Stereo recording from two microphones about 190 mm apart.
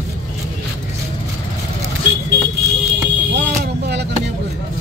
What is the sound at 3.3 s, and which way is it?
Vehicle, 65° right (ahead or behind).